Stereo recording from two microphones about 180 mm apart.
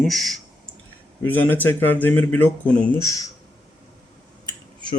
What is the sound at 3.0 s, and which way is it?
Speech, 20° left (ahead or behind).